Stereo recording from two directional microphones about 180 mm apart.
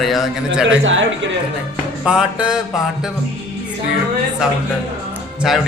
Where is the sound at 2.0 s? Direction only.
5° right (ahead or behind).